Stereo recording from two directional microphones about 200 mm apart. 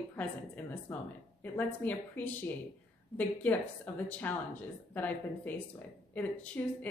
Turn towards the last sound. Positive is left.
turn(degrees=5)  # may be behind; listen again after turning